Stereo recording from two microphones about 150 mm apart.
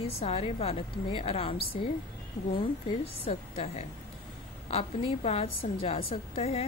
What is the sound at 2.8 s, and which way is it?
Speech, 40° left (ahead or behind).